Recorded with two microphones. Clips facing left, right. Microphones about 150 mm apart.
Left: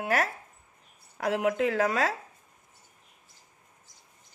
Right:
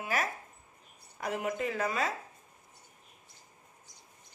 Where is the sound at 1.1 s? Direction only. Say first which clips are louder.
Left 7 dB; 85° left.